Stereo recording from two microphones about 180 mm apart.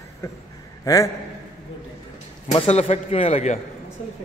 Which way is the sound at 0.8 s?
20° left (ahead or behind).